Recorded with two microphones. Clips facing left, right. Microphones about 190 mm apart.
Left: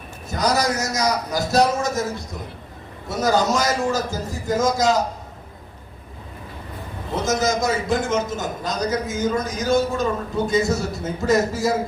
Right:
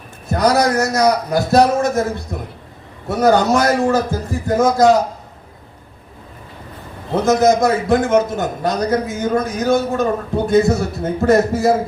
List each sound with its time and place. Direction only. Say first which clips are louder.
0.3 s a man's voice: right 6 dB; 60° right (ahead or behind)
7.2 s a man's voice: right 8 dB; 60° right (ahead or behind)